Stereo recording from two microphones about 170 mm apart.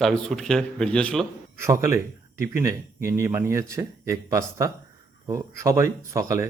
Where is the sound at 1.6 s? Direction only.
15° right (ahead or behind).